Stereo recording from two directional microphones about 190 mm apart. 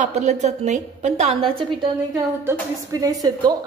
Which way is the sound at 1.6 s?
25° right (ahead or behind).